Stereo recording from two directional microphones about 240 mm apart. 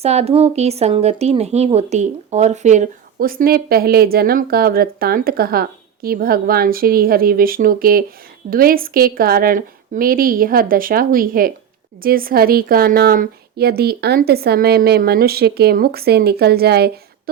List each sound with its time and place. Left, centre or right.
0.0 s speech: right